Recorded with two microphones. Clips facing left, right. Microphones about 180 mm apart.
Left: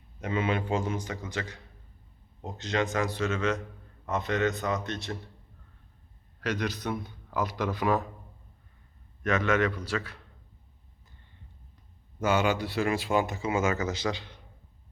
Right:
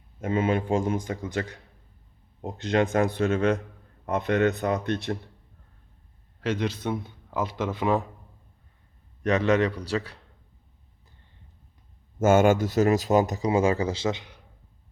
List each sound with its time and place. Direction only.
0.2 s a man's voice: 45° right (ahead or behind)
6.4 s a man's voice: 25° right (ahead or behind)
9.2 s speech: 35° right (ahead or behind)
12.2 s speech: 50° right (ahead or behind); by 14.3 s 20° right (ahead or behind)